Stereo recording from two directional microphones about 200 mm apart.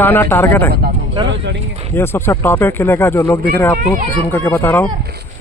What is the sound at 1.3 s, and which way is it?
Speech, 65° right (ahead or behind).